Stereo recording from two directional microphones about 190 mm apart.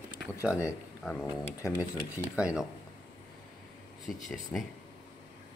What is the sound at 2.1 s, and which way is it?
Speech, 5° right (ahead or behind).